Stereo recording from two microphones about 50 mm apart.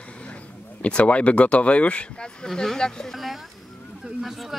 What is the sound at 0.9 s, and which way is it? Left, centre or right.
Speech, left.